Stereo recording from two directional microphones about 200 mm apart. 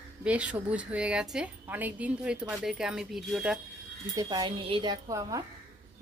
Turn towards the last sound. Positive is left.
turn(degrees=-15)  # may be behind; listen again after turning